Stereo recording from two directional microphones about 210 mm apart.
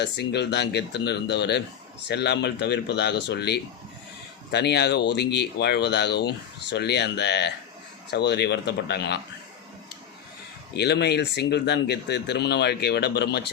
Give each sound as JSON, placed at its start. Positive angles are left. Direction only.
{"t": 0.0, "sound": "speech", "side_deg": 50}
{"t": 10.8, "sound": "speech", "side_deg": 55}